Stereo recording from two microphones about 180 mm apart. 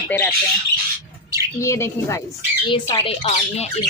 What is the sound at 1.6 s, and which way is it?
Speech, 15° left (ahead or behind).